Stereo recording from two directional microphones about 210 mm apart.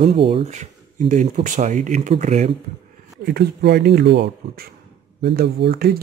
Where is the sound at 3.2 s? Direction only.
50° right (ahead or behind).